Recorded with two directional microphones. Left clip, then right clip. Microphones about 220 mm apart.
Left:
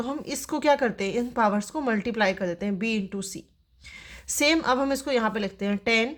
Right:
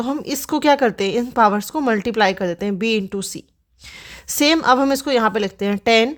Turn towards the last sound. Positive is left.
turn(degrees=-40)  # may be behind; listen again after turning